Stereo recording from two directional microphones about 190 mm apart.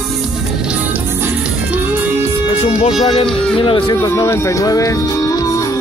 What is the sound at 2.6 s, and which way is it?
Speech, 35° left (ahead or behind).